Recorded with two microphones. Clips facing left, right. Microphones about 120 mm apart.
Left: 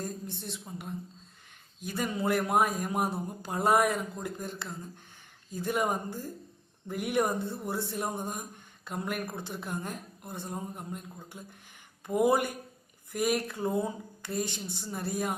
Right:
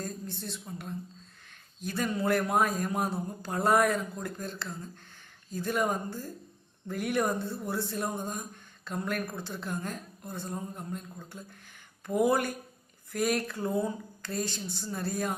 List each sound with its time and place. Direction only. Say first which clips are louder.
0.0 s speech: even; 15° left (ahead or behind)
1.8 s speech: right 1 dB; 15° left (ahead or behind)